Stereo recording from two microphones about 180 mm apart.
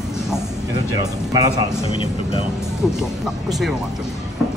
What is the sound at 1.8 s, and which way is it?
Speech, 30° left (ahead or behind).